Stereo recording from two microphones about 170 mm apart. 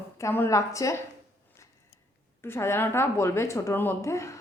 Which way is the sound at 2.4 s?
15° left (ahead or behind).